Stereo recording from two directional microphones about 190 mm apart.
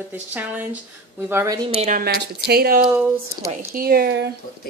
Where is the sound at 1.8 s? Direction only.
45° right (ahead or behind).